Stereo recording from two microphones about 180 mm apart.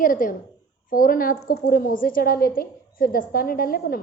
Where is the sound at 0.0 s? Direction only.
50° left (ahead or behind).